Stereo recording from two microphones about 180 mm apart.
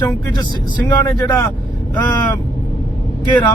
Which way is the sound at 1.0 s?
10° left (ahead or behind).